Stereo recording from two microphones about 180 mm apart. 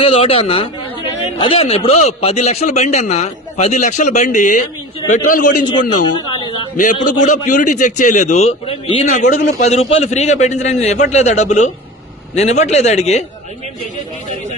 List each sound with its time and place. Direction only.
0.0 s a man's voice: 30° left (ahead or behind)
6.2 s a sound: 30° left (ahead or behind)
6.7 s a man's voice: 45° left (ahead or behind)